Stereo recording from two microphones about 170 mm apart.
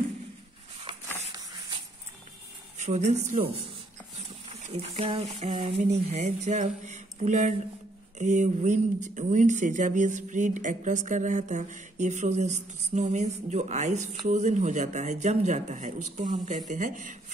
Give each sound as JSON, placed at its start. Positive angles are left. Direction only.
{"t": 1.3, "sound": "a sound", "side_deg": -25}
{"t": 2.8, "sound": "speech", "side_deg": -45}
{"t": 4.6, "sound": "speech", "side_deg": -35}